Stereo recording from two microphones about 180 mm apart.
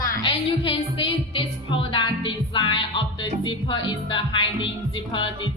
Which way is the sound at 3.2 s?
25° left (ahead or behind).